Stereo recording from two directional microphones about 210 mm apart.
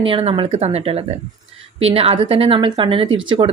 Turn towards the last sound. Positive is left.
turn(degrees=-25)  # may be behind; listen again after turning